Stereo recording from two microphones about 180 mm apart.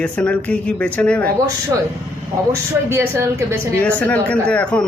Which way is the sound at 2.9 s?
15° right (ahead or behind).